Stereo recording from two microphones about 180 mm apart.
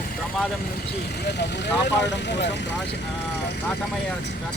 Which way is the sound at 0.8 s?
65° left (ahead or behind).